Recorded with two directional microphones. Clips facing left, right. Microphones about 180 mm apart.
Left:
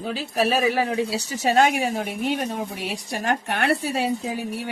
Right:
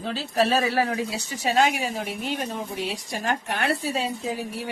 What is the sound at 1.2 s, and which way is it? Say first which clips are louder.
Speech: left 2 dB; 40° left (ahead or behind).